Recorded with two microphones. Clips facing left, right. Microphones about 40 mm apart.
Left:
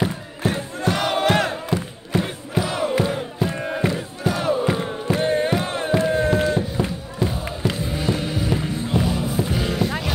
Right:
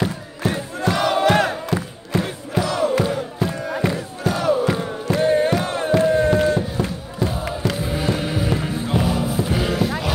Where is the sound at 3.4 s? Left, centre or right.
Left.